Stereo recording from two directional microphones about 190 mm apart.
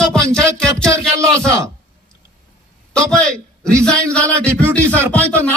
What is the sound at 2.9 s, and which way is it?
A man's voice, 5° left (ahead or behind).